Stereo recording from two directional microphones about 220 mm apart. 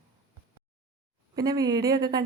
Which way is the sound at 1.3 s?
15° right (ahead or behind).